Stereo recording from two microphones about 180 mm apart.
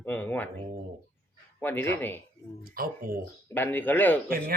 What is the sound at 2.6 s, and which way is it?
Speech, 55° right (ahead or behind).